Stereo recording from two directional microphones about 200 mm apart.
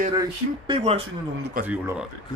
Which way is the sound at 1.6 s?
45° right (ahead or behind).